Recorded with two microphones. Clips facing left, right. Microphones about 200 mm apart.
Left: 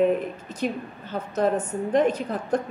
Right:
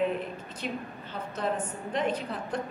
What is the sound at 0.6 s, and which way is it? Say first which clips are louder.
Speech: left 8 dB; 45° left (ahead or behind).